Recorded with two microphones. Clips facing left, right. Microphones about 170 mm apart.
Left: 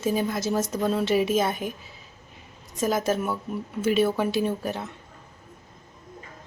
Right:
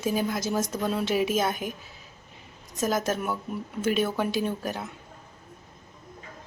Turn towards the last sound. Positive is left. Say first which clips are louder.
# left 3 dB
turn(degrees=0)  # may be behind; listen again after turning